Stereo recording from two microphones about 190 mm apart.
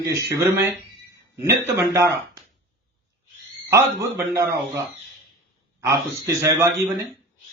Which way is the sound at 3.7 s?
15° right (ahead or behind).